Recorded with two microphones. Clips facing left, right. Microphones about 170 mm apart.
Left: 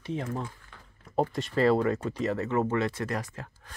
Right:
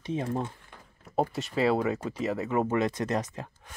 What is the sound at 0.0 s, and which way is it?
Speech, 20° right (ahead or behind).